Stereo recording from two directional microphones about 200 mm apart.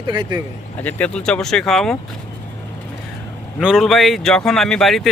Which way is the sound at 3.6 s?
Centre (ahead or behind).